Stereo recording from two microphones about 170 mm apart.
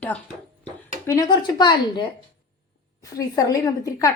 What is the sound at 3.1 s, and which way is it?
Speech, 20° left (ahead or behind).